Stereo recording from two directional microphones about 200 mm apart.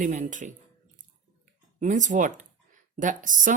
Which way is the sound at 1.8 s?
40° right (ahead or behind).